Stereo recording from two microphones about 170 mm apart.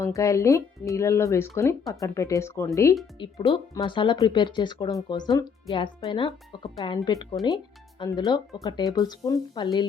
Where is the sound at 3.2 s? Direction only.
30° left (ahead or behind).